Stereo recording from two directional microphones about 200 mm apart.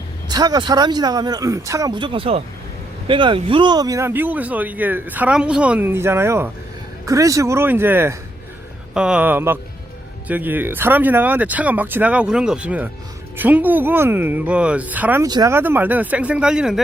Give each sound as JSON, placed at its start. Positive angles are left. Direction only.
{"t": 0.3, "sound": "speech", "side_deg": -20}